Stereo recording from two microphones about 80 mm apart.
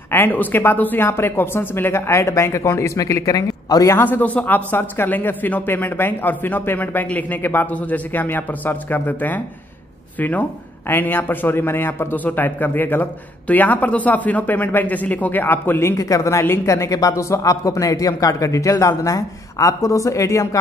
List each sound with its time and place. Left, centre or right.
0.1 s speech: left
3.9 s a man's voice: left
16.0 s speech: left